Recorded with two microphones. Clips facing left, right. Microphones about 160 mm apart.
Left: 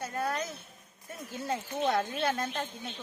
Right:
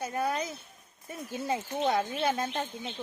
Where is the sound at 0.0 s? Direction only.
15° right (ahead or behind).